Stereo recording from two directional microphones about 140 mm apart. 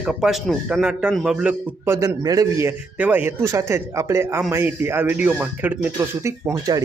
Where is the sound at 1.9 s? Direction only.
20° right (ahead or behind).